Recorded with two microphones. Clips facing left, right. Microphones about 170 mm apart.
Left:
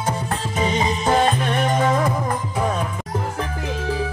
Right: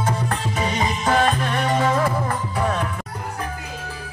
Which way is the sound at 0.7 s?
20° left (ahead or behind).